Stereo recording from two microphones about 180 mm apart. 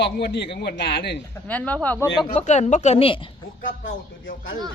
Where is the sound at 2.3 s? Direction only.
40° left (ahead or behind).